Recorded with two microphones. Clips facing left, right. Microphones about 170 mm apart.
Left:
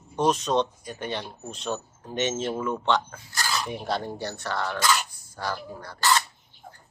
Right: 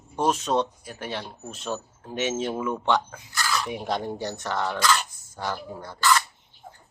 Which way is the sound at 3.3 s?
35° left (ahead or behind).